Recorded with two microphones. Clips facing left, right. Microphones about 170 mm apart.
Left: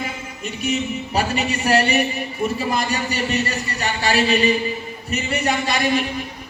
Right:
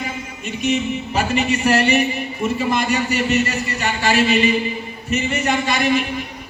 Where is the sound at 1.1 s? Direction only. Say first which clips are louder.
Right 2 dB; 35° left (ahead or behind).